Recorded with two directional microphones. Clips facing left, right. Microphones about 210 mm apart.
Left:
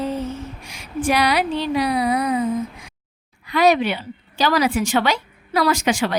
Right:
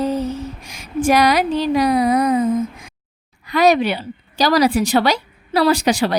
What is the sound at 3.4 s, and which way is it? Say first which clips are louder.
A woman's voice: right 2 dB; 40° right (ahead or behind).